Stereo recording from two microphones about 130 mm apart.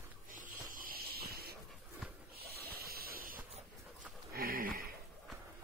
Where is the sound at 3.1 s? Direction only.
90° right.